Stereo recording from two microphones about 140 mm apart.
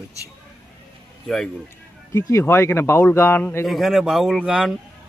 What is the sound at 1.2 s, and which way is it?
Speech, 5° left (ahead or behind).